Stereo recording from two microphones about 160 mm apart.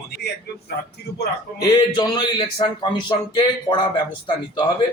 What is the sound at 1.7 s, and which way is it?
Speech, 25° left (ahead or behind).